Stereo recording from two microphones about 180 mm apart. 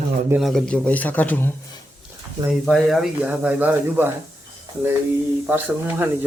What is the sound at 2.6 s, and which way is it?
Speech, centre (ahead or behind).